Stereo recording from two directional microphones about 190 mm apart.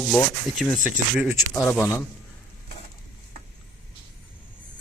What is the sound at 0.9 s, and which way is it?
Speech, 10° right (ahead or behind).